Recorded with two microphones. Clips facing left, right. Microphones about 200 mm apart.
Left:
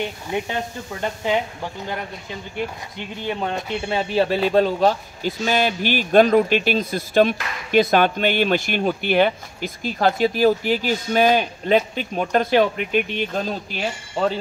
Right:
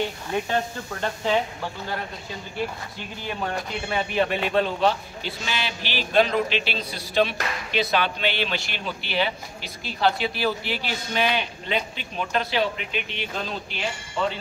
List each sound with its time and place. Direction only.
0.3 s speech: 20° left (ahead or behind)
2.5 s speech: 20° left (ahead or behind); by 14.4 s 40° left (ahead or behind)